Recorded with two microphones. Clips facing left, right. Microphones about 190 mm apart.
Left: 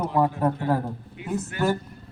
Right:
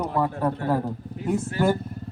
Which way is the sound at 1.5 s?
30° right (ahead or behind).